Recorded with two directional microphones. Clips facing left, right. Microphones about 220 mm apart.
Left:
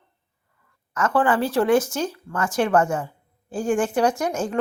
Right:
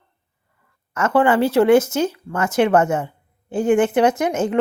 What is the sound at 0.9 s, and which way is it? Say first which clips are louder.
Speech: right 4 dB; 25° right (ahead or behind).